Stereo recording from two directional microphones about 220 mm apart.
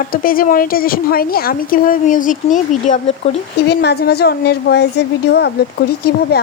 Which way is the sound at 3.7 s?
50° left (ahead or behind).